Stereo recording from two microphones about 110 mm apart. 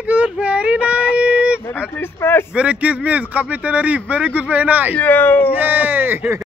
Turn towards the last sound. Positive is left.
turn(degrees=-20)  # may be behind; listen again after turning